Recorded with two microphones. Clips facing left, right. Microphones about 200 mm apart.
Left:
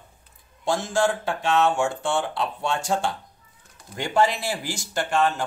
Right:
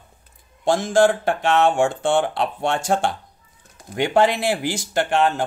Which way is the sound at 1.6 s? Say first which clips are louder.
Right 2 dB; 55° right (ahead or behind).